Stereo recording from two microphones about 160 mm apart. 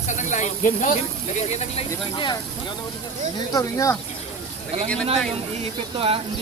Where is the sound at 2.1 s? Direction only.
30° left (ahead or behind).